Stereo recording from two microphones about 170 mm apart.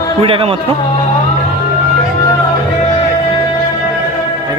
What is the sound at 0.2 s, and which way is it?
Speech, 35° right (ahead or behind).